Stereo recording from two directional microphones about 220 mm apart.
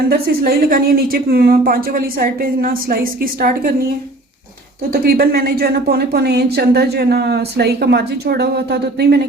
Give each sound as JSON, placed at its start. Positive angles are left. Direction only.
{"t": 0.1, "sound": "speech", "side_deg": -45}
{"t": 4.9, "sound": "speech", "side_deg": -45}